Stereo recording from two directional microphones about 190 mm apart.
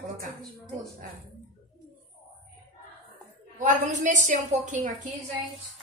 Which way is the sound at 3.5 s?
40° right (ahead or behind).